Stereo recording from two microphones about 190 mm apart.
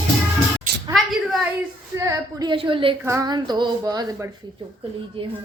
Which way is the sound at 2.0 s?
15° right (ahead or behind).